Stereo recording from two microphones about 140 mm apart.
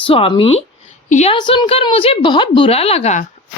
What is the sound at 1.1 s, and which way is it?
Speech, 55° left (ahead or behind).